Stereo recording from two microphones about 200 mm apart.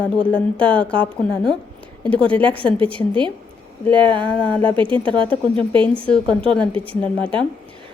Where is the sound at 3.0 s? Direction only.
20° left (ahead or behind).